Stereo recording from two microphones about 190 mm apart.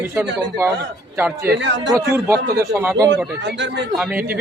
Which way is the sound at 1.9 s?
15° right (ahead or behind).